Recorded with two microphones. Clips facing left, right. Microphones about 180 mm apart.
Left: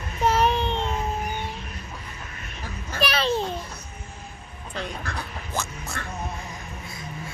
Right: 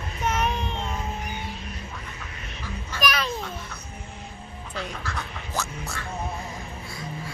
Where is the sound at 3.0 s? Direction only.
30° left (ahead or behind).